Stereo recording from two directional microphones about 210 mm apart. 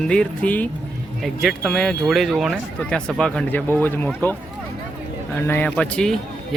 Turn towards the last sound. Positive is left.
turn(degrees=5)  # may be behind; listen again after turning